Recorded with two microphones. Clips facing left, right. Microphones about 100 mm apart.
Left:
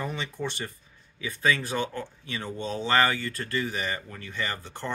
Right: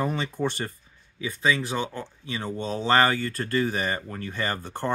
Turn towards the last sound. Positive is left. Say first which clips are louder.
# right 5 dB
turn(degrees=-40)  # may be behind; listen again after turning